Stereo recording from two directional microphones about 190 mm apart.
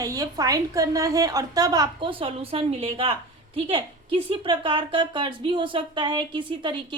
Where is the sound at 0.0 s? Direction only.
20° right (ahead or behind).